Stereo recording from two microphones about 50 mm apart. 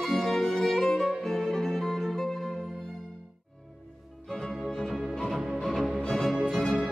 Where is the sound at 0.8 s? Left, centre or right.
Centre.